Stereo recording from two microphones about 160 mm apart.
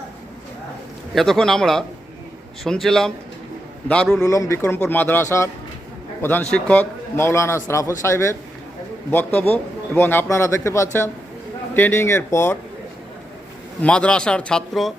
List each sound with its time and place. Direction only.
1.1 s a man's voice: centre (ahead or behind)
4.3 s a man's voice: 20° left (ahead or behind)
13.8 s speech: 5° left (ahead or behind)